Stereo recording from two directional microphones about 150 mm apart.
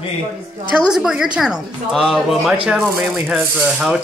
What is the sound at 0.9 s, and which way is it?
A man's voice, 5° right (ahead or behind).